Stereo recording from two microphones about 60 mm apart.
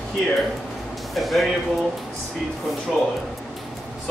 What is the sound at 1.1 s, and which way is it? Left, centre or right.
Speech, centre.